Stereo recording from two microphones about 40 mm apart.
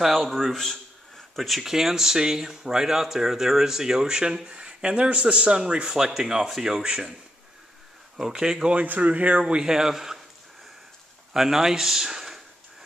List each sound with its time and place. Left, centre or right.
0.0 s speech: centre
6.8 s a man's voice: centre
8.2 s speech: centre
8.7 s speech: right
9.6 s speech: centre
11.3 s speech: centre